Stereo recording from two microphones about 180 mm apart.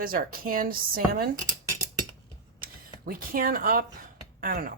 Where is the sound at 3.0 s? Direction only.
55° right (ahead or behind).